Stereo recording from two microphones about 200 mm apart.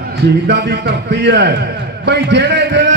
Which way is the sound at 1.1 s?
60° right (ahead or behind).